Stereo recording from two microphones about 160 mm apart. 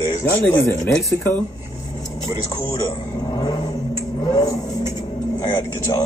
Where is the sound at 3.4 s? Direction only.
30° left (ahead or behind).